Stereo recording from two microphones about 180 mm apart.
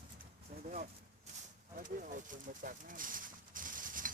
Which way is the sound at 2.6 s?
50° right (ahead or behind).